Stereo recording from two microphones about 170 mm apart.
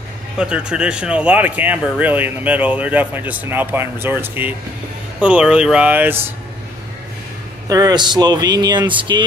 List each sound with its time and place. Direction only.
0.4 s speech: 5° right (ahead or behind)
7.6 s speech: 20° right (ahead or behind)